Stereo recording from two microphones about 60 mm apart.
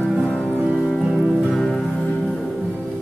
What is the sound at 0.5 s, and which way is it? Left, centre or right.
Music, right.